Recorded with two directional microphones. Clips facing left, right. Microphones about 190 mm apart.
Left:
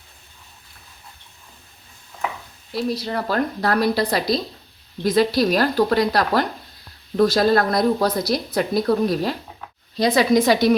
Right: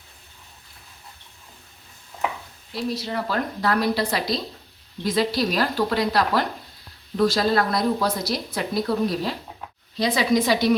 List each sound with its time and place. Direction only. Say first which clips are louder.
3.0 s a woman's voice: left 4 dB; 40° left (ahead or behind)